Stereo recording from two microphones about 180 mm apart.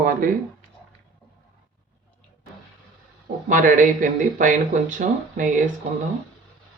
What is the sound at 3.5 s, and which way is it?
Speech, 45° right (ahead or behind).